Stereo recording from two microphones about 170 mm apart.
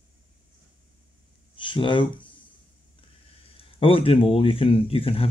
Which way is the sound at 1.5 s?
30° left (ahead or behind).